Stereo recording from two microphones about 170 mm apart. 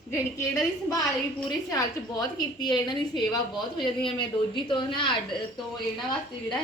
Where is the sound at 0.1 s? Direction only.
15° left (ahead or behind).